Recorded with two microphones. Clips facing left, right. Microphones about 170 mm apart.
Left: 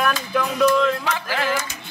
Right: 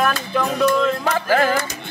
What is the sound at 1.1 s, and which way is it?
Speech, 45° right (ahead or behind).